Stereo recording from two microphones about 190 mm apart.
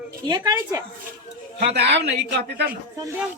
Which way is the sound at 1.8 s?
65° right (ahead or behind).